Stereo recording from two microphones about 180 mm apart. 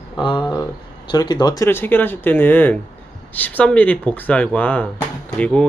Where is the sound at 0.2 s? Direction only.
25° left (ahead or behind).